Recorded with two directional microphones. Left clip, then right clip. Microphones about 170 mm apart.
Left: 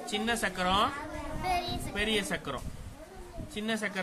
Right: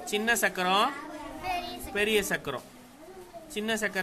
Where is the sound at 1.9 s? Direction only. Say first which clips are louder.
Right 5 dB; 40° right (ahead or behind).